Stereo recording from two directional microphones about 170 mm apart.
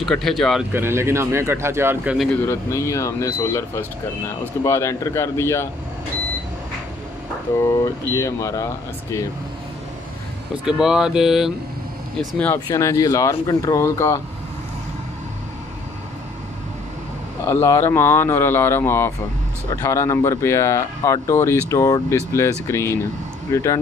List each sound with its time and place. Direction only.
0.0 s speech: centre (ahead or behind)
0.7 s speech: 15° right (ahead or behind)
2.4 s speech: 15° left (ahead or behind)
8.1 s speech: 20° left (ahead or behind)
10.6 s speech: 5° right (ahead or behind)
12.5 s speech: 20° left (ahead or behind)
17.5 s speech: 15° left (ahead or behind)